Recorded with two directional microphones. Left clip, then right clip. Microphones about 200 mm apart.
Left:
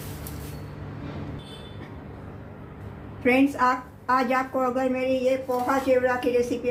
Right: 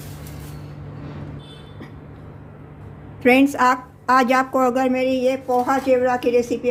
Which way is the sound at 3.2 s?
50° right (ahead or behind).